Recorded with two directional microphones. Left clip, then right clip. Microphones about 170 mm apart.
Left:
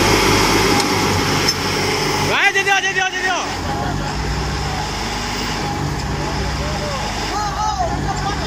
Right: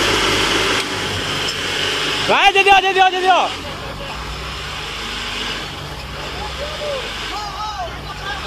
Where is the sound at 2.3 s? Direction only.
15° right (ahead or behind).